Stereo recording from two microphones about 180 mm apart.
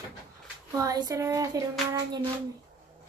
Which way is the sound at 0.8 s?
20° right (ahead or behind).